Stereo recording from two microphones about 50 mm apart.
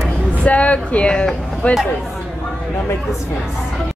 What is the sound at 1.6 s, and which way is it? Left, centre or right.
Speech, left.